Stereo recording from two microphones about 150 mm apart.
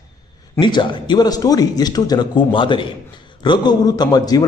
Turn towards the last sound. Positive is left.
turn(degrees=25)  # may be behind; listen again after turning